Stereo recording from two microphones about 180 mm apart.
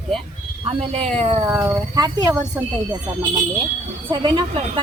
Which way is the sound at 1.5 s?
20° right (ahead or behind).